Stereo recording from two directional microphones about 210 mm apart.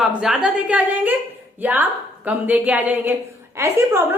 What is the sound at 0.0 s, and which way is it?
A woman's voice, 5° right (ahead or behind).